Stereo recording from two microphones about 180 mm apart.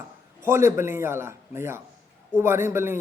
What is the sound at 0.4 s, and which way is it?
A man's voice, 15° right (ahead or behind).